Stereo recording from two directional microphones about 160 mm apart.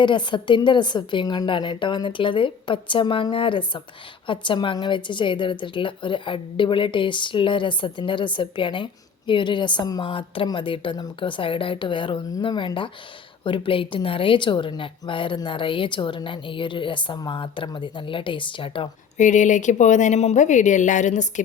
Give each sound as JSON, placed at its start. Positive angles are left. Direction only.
{"t": 0.0, "sound": "a woman's voice", "side_deg": 30}
{"t": 19.1, "sound": "a woman's voice", "side_deg": 50}